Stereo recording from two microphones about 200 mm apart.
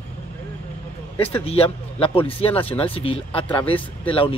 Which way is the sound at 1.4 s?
30° left (ahead or behind).